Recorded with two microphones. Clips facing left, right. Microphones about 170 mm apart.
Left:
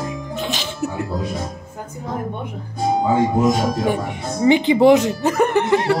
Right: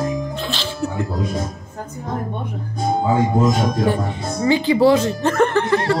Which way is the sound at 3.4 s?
15° left (ahead or behind).